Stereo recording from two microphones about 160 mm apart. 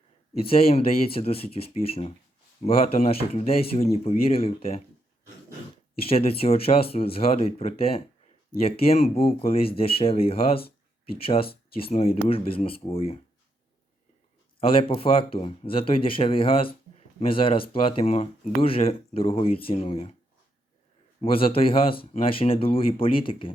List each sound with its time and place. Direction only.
0.3 s speech: 35° left (ahead or behind)
6.0 s speech: 35° left (ahead or behind)
11.7 s speech: 35° left (ahead or behind)
14.6 s speech: 35° left (ahead or behind)
21.2 s speech: 35° left (ahead or behind)